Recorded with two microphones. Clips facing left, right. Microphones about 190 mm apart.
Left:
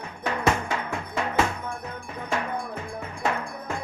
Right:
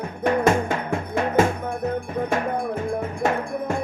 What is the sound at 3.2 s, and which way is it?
Cowbell, 45° right (ahead or behind).